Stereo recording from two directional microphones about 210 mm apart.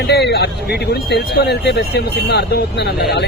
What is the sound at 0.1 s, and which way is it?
Speech, 50° left (ahead or behind).